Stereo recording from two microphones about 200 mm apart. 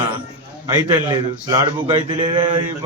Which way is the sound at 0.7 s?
20° right (ahead or behind).